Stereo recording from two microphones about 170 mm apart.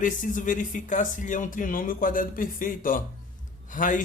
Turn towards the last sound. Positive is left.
turn(degrees=50)  # may be behind; listen again after turning